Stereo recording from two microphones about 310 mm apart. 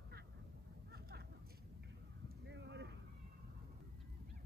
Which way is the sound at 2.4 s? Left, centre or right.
Right.